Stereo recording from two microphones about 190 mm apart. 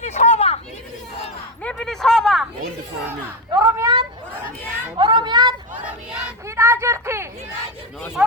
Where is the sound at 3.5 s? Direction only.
20° right (ahead or behind).